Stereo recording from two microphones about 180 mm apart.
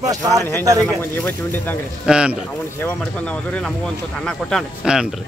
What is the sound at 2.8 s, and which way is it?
Speech, 10° left (ahead or behind).